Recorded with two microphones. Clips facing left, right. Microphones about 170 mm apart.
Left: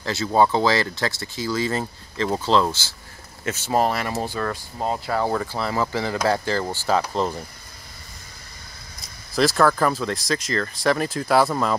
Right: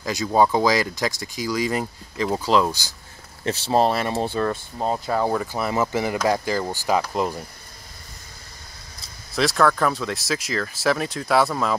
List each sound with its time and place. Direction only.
0.0 s speech: 15° right (ahead or behind)
3.4 s speech: 30° right (ahead or behind)
5.2 s speech: 10° right (ahead or behind)
9.3 s speech: centre (ahead or behind)